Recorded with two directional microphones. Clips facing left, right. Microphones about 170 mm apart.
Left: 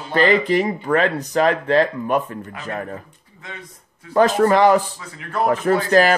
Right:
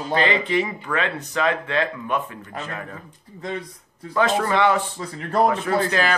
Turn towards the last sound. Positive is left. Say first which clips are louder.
# left 6 dB
turn(degrees=40)  # may be behind; listen again after turning